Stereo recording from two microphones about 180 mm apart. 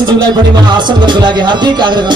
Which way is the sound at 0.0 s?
25° right (ahead or behind).